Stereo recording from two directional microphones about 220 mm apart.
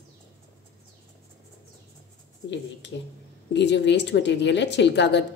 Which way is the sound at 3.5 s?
50° left (ahead or behind).